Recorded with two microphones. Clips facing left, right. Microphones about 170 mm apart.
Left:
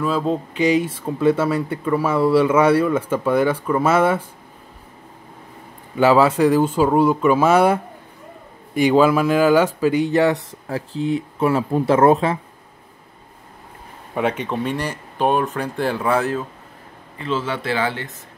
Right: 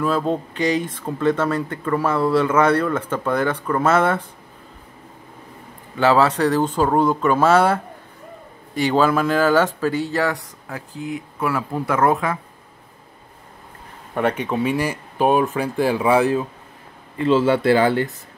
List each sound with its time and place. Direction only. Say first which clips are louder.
0.0 s speech: even; centre (ahead or behind)
5.9 s speech: left 2 dB; 10° left (ahead or behind); by 12.4 s 25° left (ahead or behind)
14.1 s speech: right 1 dB; centre (ahead or behind)
17.3 s speech: right 7 dB; 35° right (ahead or behind)